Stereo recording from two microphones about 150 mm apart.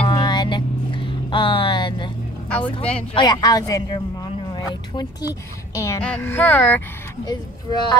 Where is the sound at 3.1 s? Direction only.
25° left (ahead or behind).